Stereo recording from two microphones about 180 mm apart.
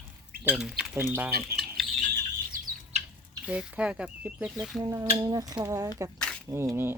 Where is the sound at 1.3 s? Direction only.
60° right (ahead or behind).